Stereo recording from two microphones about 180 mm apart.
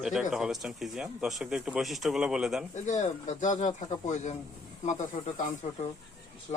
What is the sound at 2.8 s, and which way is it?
Speech, 40° left (ahead or behind).